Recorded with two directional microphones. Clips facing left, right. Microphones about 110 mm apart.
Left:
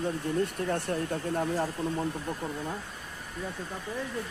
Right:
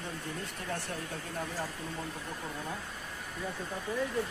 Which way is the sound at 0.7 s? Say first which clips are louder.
Left 8 dB; 55° left (ahead or behind).